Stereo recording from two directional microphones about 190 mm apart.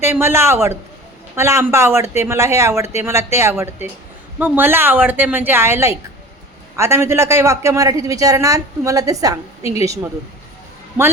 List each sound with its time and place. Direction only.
0.0 s a woman's voice: 10° right (ahead or behind)